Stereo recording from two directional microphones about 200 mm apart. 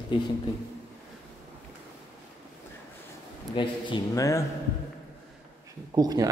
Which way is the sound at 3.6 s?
25° left (ahead or behind).